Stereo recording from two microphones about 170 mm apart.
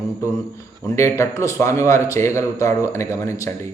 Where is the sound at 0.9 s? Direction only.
15° left (ahead or behind).